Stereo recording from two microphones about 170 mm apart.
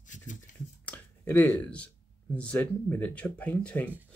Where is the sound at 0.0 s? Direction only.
50° left (ahead or behind).